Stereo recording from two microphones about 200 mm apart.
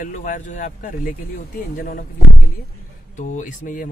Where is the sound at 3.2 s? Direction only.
40° left (ahead or behind).